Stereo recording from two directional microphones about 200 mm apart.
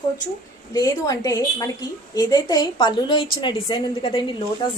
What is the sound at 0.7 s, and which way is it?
A woman's voice, 20° left (ahead or behind).